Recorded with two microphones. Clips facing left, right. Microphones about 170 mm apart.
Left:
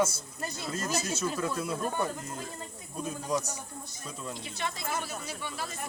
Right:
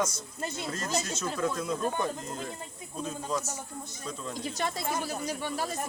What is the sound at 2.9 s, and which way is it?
Speech, 15° left (ahead or behind).